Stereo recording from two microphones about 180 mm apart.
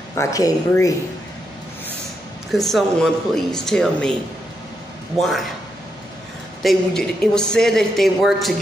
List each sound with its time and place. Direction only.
0.1 s speech: 15° left (ahead or behind)
2.5 s speech: centre (ahead or behind)
5.2 s speech: centre (ahead or behind)
6.6 s speech: centre (ahead or behind)